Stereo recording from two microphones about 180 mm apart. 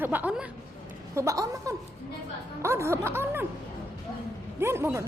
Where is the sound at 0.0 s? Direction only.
10° right (ahead or behind).